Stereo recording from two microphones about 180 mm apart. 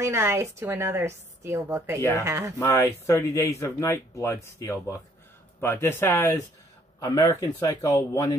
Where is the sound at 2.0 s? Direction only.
15° left (ahead or behind).